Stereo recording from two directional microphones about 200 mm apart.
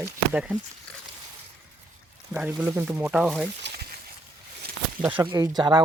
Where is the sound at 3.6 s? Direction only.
60° right (ahead or behind).